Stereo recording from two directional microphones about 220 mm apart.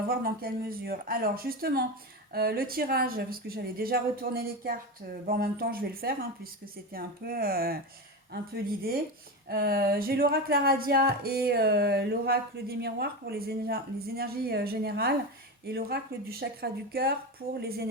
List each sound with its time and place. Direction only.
0.1 s speech: 40° right (ahead or behind)
9.5 s speech: 45° right (ahead or behind)